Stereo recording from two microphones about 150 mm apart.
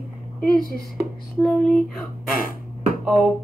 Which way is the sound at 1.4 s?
Centre (ahead or behind).